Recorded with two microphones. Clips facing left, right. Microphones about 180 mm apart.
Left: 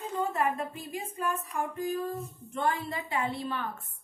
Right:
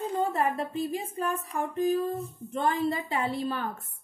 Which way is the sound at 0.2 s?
35° right (ahead or behind).